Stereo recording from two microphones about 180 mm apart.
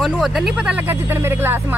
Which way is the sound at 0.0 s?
Centre (ahead or behind).